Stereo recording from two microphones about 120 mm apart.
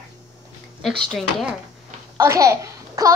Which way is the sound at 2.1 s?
25° right (ahead or behind).